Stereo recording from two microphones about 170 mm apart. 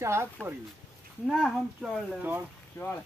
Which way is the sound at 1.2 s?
Centre (ahead or behind).